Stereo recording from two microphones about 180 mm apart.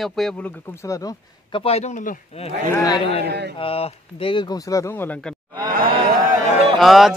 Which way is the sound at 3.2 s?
70° right (ahead or behind).